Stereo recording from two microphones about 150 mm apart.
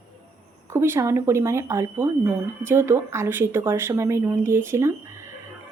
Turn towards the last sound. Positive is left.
turn(degrees=-20)  # may be behind; listen again after turning